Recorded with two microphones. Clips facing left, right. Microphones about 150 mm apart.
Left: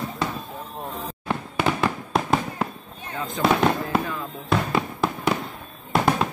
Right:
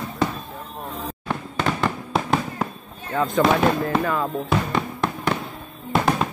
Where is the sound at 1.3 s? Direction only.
5° left (ahead or behind).